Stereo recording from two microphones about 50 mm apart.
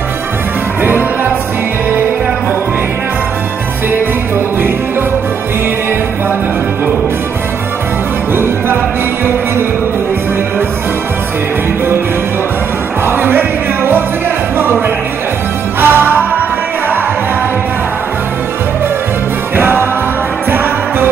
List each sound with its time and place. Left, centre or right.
9.2 s music: right
13.0 s music: right
15.8 s music: right
19.5 s music: right